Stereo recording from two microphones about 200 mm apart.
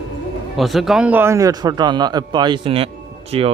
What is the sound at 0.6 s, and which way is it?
A man's voice, centre (ahead or behind).